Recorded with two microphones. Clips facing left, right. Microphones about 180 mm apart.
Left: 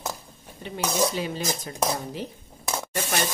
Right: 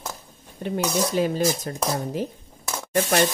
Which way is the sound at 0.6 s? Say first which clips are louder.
Right 2 dB; 50° right (ahead or behind).